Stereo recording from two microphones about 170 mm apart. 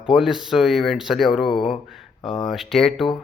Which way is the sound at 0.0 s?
5° right (ahead or behind).